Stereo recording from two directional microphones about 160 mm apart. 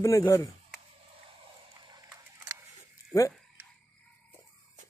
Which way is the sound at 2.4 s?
15° right (ahead or behind).